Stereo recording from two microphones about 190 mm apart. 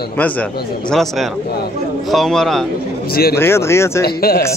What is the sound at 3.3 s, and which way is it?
Speech, 15° left (ahead or behind).